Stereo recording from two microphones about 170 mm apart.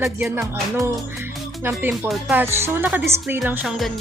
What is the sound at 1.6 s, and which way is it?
Speech, 15° right (ahead or behind).